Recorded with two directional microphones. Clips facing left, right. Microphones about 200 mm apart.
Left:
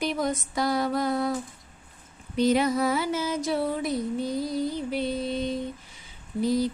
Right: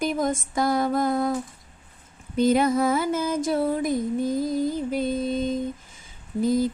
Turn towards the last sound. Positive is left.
turn(degrees=-50)  # may be behind; listen again after turning